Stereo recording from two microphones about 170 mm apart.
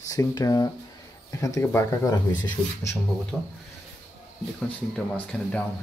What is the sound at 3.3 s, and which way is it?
Speech, 10° right (ahead or behind).